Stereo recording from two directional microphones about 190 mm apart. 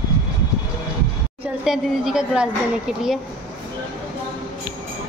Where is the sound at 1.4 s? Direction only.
5° right (ahead or behind).